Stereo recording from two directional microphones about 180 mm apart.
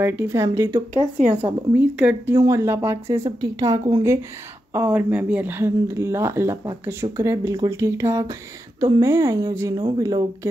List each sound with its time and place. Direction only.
0.0 s speech: 10° right (ahead or behind)
0.9 s speech: 45° right (ahead or behind)
1.3 s a woman's voice: 10° right (ahead or behind)